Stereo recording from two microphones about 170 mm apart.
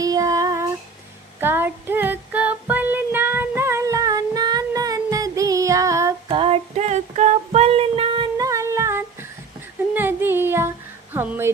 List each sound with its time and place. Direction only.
0.0 s child singing: 20° right (ahead or behind)
6.2 s female singing: 30° right (ahead or behind); by 9.0 s 15° right (ahead or behind)
9.9 s music: 10° right (ahead or behind)
11.1 s a sound: 10° right (ahead or behind)